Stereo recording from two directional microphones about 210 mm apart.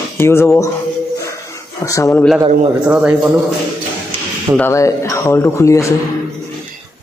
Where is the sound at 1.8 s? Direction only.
15° left (ahead or behind).